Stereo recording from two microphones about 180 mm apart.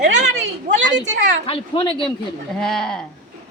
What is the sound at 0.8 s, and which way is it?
Speech, 75° right (ahead or behind).